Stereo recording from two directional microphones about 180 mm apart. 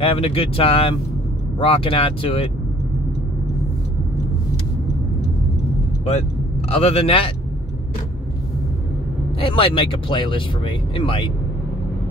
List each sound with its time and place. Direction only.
0.0 s speech: 30° left (ahead or behind)
6.7 s speech: 35° left (ahead or behind)
9.4 s speech: 30° left (ahead or behind)